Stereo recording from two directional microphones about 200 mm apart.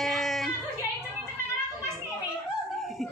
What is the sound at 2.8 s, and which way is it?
Snicker, centre (ahead or behind).